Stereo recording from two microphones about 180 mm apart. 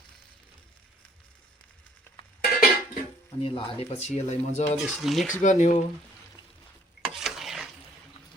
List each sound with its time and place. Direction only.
2.4 s music: 55° left (ahead or behind)
3.4 s speech: 30° left (ahead or behind)
4.8 s speech: centre (ahead or behind)
5.3 s speech: 40° left (ahead or behind)
7.0 s a sound: centre (ahead or behind)